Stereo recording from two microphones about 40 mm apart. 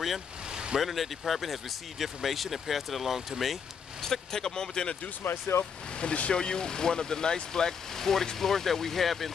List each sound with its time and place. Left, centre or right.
0.5 s vehicle: right
0.7 s speech: centre
4.0 s speech: centre
5.2 s speech: left
5.9 s speech: left; by 9.3 s centre